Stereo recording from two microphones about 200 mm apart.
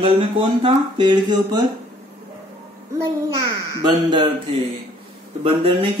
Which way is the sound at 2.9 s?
15° right (ahead or behind).